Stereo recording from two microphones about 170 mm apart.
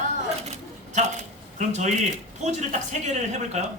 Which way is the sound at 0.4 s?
40° right (ahead or behind).